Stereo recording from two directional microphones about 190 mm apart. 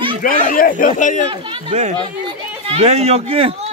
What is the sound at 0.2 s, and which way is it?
Speech, 45° left (ahead or behind).